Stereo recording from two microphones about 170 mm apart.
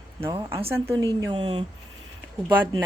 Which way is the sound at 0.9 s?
25° right (ahead or behind).